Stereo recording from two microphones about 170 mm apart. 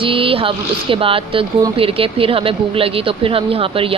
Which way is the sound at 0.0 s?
30° right (ahead or behind).